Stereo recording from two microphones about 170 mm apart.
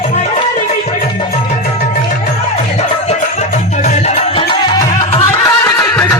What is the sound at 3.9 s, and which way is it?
Music, 40° left (ahead or behind).